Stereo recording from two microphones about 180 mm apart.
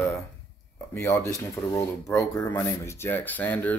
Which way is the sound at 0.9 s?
15° left (ahead or behind).